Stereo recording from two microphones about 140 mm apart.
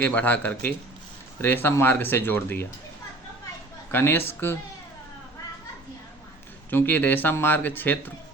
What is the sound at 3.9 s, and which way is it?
Speech, 15° left (ahead or behind).